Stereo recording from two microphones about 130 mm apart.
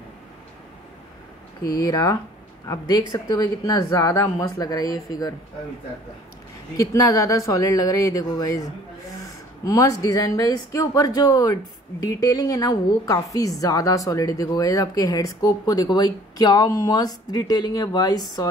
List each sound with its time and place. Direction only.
1.8 s a woman's voice: 30° left (ahead or behind)
6.8 s a woman's voice: 25° left (ahead or behind)